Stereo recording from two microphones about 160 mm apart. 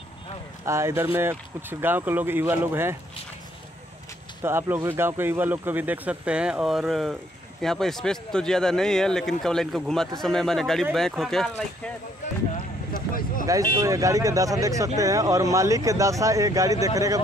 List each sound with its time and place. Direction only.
0.7 s speech: 15° right (ahead or behind)
4.4 s speech: 15° right (ahead or behind); by 11.9 s 5° left (ahead or behind)
12.9 s vehicle: 60° left (ahead or behind)
13.7 s speech: 20° right (ahead or behind)